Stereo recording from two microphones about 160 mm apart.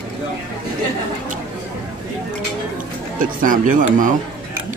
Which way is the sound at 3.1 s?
55° right (ahead or behind).